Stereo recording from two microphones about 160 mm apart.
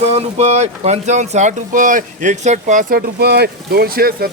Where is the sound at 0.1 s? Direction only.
45° right (ahead or behind).